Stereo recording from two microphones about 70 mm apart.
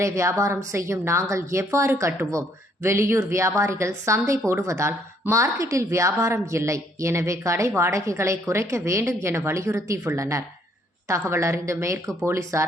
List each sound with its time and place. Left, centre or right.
0.0 s a woman's voice: right